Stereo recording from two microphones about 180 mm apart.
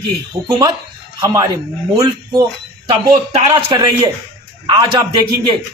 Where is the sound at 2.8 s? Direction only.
30° right (ahead or behind).